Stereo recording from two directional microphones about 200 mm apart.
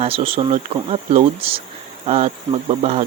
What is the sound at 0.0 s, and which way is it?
Speech, 30° right (ahead or behind).